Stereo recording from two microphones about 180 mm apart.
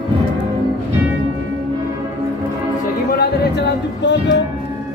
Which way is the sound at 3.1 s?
70° left (ahead or behind).